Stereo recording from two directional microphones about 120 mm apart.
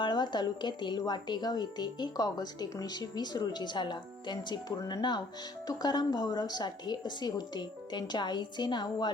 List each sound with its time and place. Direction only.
0.0 s speech: 40° left (ahead or behind)